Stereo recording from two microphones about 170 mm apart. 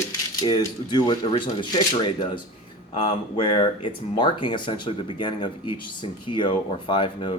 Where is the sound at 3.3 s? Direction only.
30° left (ahead or behind).